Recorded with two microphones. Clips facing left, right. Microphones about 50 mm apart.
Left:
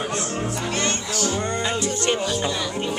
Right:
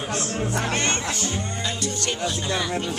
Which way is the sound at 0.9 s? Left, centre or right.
Right.